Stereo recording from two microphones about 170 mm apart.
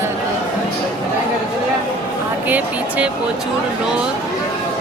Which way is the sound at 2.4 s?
10° right (ahead or behind).